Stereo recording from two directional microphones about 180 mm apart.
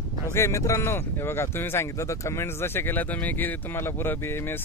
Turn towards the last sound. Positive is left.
turn(degrees=15)  # may be behind; listen again after turning